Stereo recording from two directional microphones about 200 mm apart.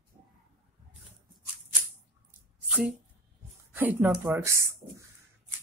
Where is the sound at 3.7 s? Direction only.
10° right (ahead or behind).